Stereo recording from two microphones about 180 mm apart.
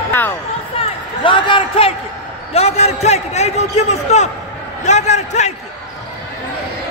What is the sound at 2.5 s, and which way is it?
A man's voice, 35° left (ahead or behind).